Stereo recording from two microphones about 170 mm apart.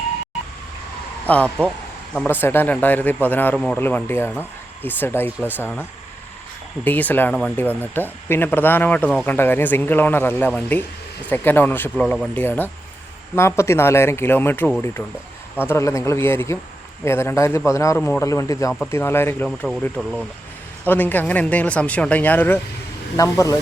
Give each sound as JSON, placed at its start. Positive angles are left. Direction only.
{"t": 1.3, "sound": "speech", "side_deg": 5}
{"t": 6.8, "sound": "speech", "side_deg": 10}
{"t": 19.5, "sound": "speech", "side_deg": 0}
{"t": 20.8, "sound": "speech", "side_deg": 10}